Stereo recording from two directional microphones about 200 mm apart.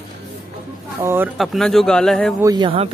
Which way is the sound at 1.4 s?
Centre (ahead or behind).